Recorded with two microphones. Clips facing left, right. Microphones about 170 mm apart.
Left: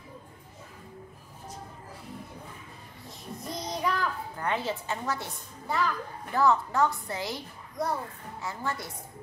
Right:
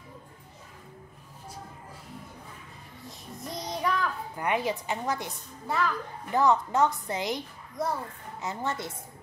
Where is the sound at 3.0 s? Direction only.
Centre (ahead or behind).